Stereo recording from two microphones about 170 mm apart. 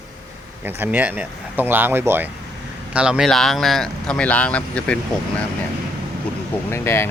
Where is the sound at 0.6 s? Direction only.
10° right (ahead or behind); by 4.9 s 5° left (ahead or behind).